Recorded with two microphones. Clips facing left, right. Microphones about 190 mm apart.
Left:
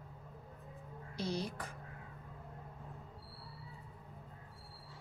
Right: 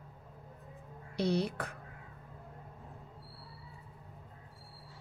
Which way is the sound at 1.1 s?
65° right (ahead or behind).